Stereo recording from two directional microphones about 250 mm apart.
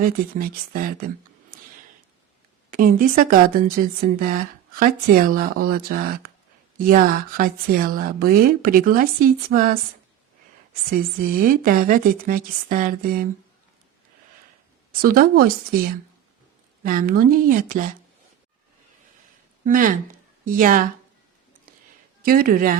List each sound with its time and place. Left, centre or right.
0.0 s speech: right
2.6 s a woman's voice: right
10.9 s speech: right
15.0 s speech: right
19.6 s a woman's voice: right
22.2 s speech: right